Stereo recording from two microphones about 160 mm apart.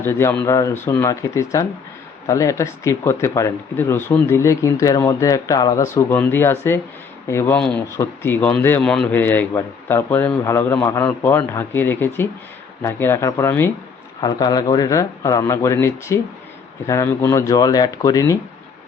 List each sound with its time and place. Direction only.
0.0 s a man's voice: 15° left (ahead or behind)